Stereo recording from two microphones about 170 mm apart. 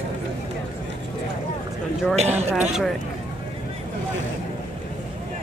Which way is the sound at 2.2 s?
40° right (ahead or behind).